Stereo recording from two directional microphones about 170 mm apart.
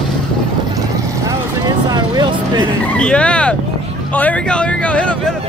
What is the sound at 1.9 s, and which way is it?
Vehicle, 25° right (ahead or behind).